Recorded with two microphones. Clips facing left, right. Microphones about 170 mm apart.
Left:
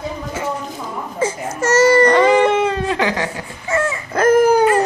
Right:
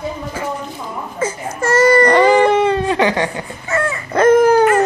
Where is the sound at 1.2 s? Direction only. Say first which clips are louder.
Left 1 dB; 20° left (ahead or behind).